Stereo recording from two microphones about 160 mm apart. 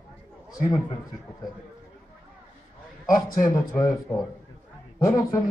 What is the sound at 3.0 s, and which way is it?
Speech, 60° left (ahead or behind).